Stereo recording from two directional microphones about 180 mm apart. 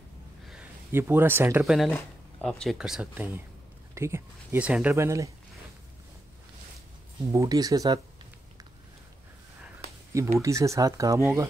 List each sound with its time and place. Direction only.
0.5 s speech: 10° right (ahead or behind)
7.3 s speech: 20° right (ahead or behind)
10.4 s speech: 15° right (ahead or behind)